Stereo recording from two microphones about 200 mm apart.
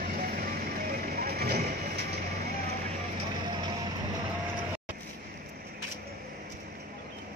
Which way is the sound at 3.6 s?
20° right (ahead or behind).